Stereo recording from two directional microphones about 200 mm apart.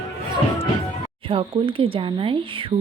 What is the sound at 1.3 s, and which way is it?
Speech, 25° right (ahead or behind).